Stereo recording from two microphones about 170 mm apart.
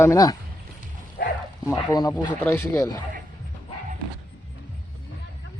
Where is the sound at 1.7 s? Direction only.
20° left (ahead or behind).